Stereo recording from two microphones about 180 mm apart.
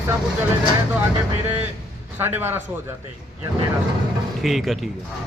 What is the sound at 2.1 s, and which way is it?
Speech, 10° right (ahead or behind).